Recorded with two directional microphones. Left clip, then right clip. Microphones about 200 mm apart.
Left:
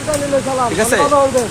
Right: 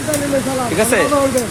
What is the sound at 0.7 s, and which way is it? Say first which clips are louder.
Speech: right 1 dB; centre (ahead or behind).